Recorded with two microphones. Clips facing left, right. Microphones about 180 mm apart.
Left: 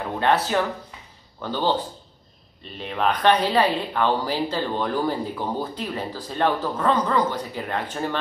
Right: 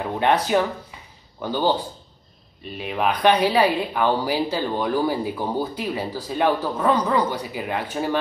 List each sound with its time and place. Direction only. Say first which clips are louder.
0.2 s speech: right 2 dB; 15° right (ahead or behind)
2.8 s speech: right 1 dB; 10° right (ahead or behind)